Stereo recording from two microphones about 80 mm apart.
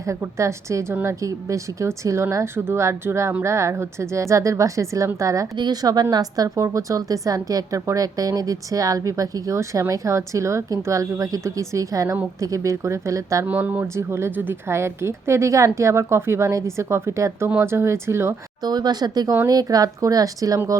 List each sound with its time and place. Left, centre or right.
0.0 s speech: right
5.5 s a woman's voice: right
13.4 s speech: right
13.9 s speech: right
18.6 s a woman's voice: right